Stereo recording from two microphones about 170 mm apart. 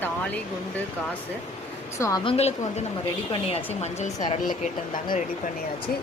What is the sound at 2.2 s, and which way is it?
Speech, 35° left (ahead or behind).